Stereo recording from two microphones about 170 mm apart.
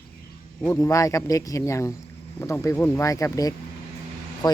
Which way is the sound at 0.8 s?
20° left (ahead or behind).